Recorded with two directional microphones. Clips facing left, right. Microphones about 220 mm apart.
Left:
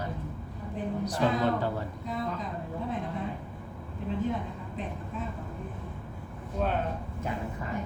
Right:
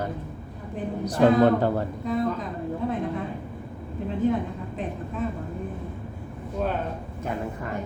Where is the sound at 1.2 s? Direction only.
55° right (ahead or behind).